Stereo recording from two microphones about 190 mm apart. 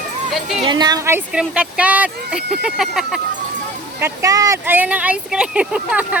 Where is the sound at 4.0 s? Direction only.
15° right (ahead or behind).